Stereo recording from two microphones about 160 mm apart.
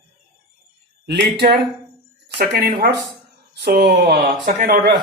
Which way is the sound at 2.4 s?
80° right.